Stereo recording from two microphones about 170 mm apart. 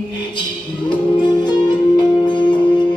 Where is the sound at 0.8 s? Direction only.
25° left (ahead or behind).